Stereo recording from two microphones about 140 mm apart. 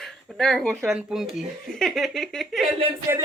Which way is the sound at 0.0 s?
Centre (ahead or behind).